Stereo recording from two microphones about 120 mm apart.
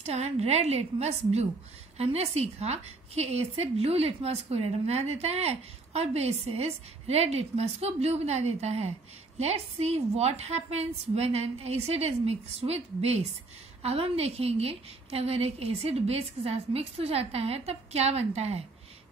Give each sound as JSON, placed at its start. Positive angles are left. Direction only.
{"t": 0.0, "sound": "a woman's voice", "side_deg": -60}